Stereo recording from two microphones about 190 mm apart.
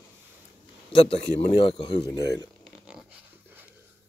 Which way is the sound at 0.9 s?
30° left (ahead or behind).